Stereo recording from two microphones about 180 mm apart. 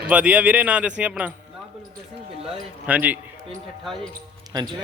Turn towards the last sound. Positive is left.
turn(degrees=-25)  # may be behind; listen again after turning